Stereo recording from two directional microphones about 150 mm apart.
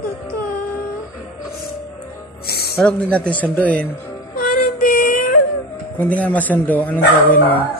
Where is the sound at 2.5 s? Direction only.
90° left.